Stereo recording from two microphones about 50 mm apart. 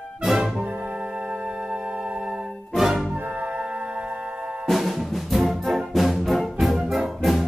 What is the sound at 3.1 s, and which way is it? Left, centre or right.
Music, right.